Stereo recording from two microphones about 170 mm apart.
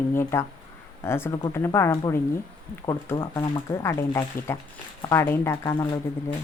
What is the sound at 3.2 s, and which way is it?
Speech, 25° left (ahead or behind).